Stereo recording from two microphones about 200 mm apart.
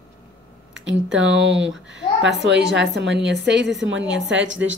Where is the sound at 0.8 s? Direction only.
65° right (ahead or behind).